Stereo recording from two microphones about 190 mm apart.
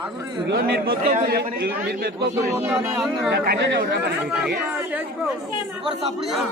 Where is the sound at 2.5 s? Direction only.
10° right (ahead or behind).